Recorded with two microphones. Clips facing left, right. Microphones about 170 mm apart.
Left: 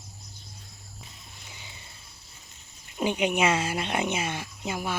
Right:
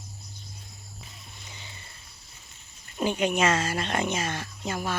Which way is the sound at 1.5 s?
10° left (ahead or behind).